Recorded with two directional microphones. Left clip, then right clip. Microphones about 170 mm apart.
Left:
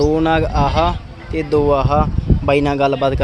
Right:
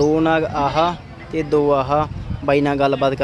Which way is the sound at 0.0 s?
Centre (ahead or behind).